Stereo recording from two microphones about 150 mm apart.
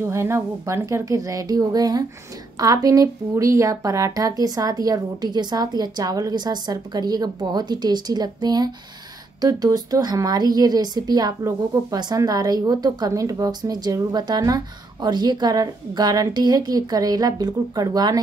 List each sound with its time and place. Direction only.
0.0 s a woman's voice: 15° right (ahead or behind)